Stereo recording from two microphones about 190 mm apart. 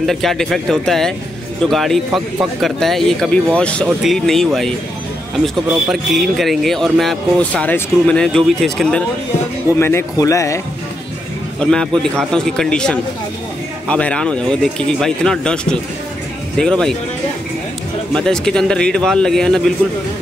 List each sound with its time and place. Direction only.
0.0 s speech: centre (ahead or behind)
9.8 s a man's voice: 15° left (ahead or behind)
11.6 s speech: 5° left (ahead or behind)
18.1 s speech: 5° left (ahead or behind)